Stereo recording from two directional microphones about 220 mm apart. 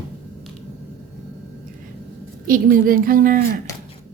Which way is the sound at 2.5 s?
40° right (ahead or behind).